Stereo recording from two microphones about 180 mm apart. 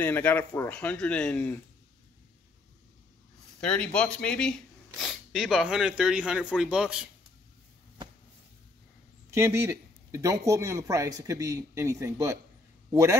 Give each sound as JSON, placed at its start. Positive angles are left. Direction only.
{"t": 0.0, "sound": "speech", "side_deg": 10}
{"t": 3.6, "sound": "speech", "side_deg": 5}
{"t": 9.3, "sound": "speech", "side_deg": -15}